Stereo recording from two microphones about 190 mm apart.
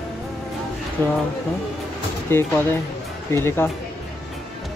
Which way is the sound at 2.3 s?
10° left (ahead or behind).